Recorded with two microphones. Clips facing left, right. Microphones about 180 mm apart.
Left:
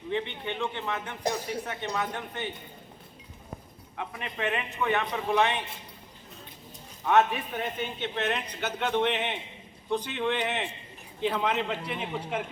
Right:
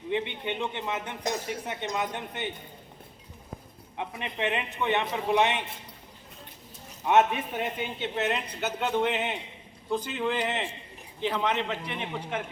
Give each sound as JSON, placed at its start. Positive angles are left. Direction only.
{"t": 0.1, "sound": "a man's voice", "side_deg": -20}
{"t": 3.9, "sound": "a man's voice", "side_deg": -20}
{"t": 7.0, "sound": "a man's voice", "side_deg": -20}